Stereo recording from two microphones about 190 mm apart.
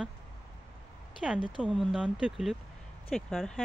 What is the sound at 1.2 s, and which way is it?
Speech, 5° right (ahead or behind).